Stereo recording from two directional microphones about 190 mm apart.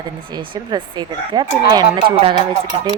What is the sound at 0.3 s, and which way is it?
Speech, 20° right (ahead or behind).